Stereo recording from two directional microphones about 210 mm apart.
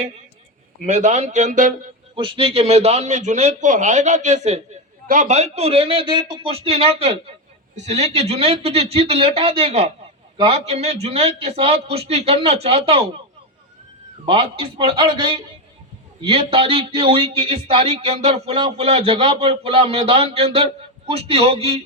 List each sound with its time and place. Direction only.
0.9 s speech: 35° right (ahead or behind)
2.1 s a man's voice: 25° right (ahead or behind)
14.3 s a man's voice: 25° right (ahead or behind)